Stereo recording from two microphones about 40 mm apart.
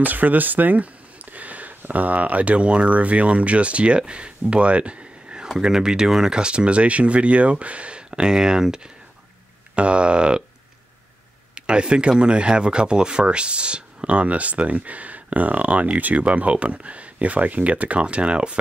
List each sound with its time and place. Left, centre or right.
0.0 s a sound: right
1.8 s speech: right
5.6 s speech: centre
6.4 s speech: right
9.8 s speech: right
11.5 s speech: right